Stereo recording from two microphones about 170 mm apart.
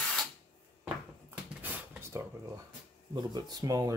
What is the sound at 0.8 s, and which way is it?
Cupboard open or close, 10° right (ahead or behind).